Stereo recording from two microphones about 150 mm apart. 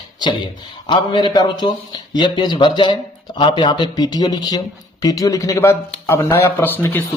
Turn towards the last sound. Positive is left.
turn(degrees=15)  # may be behind; listen again after turning